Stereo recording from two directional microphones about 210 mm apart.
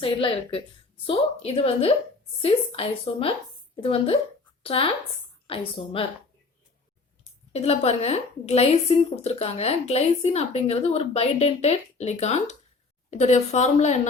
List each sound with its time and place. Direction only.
0.0 s a woman's voice: 25° left (ahead or behind)
7.5 s a woman's voice: 30° left (ahead or behind)